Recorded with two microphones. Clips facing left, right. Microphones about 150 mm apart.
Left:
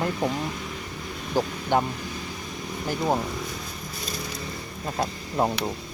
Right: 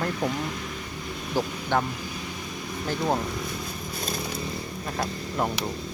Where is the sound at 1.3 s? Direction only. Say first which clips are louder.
Left 2 dB; 15° left (ahead or behind).